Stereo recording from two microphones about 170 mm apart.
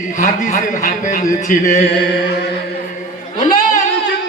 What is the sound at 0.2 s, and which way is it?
Speech, 45° left (ahead or behind).